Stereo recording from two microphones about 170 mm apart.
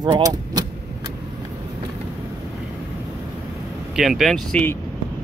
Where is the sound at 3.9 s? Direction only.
Centre (ahead or behind).